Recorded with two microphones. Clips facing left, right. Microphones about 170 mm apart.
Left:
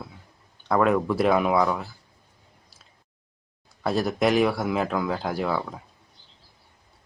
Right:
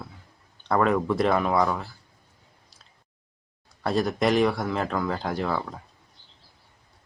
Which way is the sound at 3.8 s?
Centre (ahead or behind).